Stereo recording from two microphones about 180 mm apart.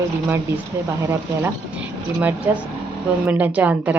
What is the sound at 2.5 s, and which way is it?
Speech, 10° right (ahead or behind).